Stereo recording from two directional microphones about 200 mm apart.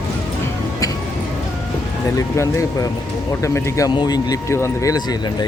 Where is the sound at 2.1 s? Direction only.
15° left (ahead or behind).